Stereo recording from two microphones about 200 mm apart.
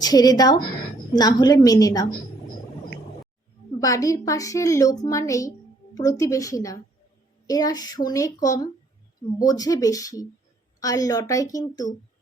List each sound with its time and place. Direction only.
0.0 s a woman's voice: 20° left (ahead or behind)
3.8 s a woman's voice: 15° left (ahead or behind)